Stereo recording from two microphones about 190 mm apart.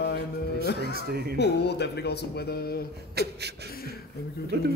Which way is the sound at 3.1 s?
60° right (ahead or behind).